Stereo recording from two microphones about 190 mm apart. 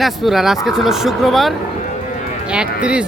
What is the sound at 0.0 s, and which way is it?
Speech, centre (ahead or behind).